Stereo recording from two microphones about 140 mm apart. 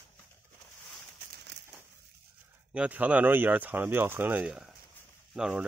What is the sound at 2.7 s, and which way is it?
Speech, 10° right (ahead or behind).